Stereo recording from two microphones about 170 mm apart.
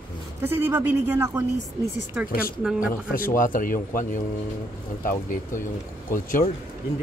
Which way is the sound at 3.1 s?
55° left (ahead or behind).